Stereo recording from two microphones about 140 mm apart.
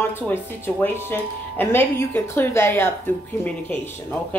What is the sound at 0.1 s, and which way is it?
Speech, 15° left (ahead or behind).